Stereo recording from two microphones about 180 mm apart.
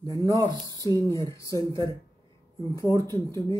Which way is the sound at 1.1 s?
15° left (ahead or behind).